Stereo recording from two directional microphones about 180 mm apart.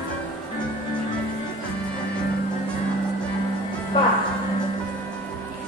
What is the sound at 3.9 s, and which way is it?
Music, 30° left (ahead or behind).